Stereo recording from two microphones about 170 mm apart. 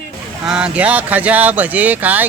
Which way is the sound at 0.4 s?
5° right (ahead or behind).